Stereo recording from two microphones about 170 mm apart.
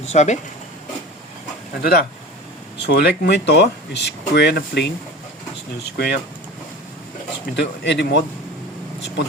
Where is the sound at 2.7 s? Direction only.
75° left (ahead or behind).